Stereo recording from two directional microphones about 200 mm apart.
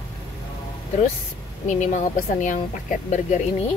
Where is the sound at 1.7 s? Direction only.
35° left (ahead or behind).